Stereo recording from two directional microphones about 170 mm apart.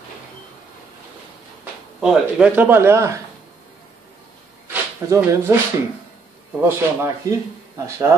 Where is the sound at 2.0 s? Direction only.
5° right (ahead or behind).